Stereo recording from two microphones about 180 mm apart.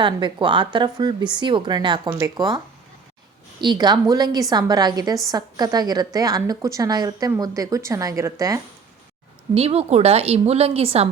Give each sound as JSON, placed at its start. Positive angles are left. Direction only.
{"t": 0.0, "sound": "speech", "side_deg": -25}
{"t": 3.6, "sound": "speech", "side_deg": -25}
{"t": 9.6, "sound": "a woman's voice", "side_deg": -35}